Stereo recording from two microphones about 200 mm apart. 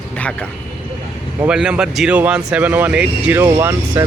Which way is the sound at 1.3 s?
5° right (ahead or behind).